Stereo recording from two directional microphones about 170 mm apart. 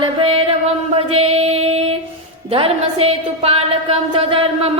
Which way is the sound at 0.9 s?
35° right (ahead or behind).